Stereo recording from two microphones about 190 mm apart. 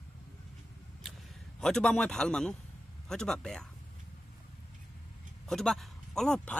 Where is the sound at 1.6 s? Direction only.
5° left (ahead or behind).